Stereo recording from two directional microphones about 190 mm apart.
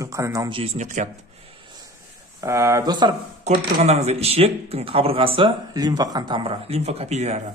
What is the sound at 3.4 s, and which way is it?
Speech, 35° right (ahead or behind).